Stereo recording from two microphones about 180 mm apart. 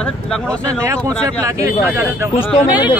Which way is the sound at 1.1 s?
15° right (ahead or behind).